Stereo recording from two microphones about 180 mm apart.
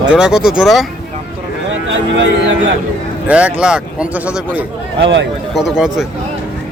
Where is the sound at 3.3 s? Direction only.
5° right (ahead or behind).